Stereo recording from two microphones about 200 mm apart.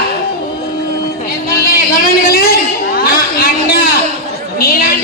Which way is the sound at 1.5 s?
50° left (ahead or behind).